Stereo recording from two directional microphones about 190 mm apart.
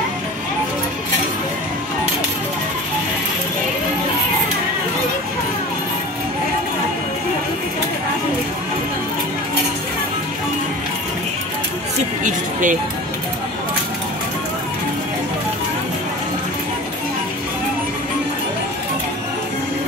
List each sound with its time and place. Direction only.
12.2 s music: 40° right (ahead or behind)